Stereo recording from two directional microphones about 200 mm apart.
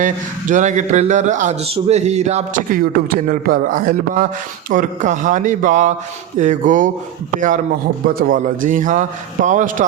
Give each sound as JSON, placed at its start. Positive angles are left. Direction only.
{"t": 0.0, "sound": "speech", "side_deg": -40}